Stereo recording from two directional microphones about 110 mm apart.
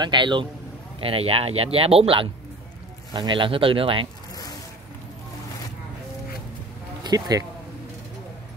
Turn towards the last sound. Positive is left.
turn(degrees=-35)  # may be behind; listen again after turning